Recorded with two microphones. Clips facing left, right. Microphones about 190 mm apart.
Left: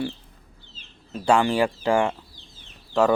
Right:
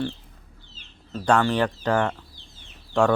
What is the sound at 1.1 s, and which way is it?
Speech, 10° left (ahead or behind).